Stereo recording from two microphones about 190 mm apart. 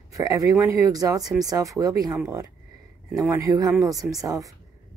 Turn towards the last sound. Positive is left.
turn(degrees=-15)  # may be behind; listen again after turning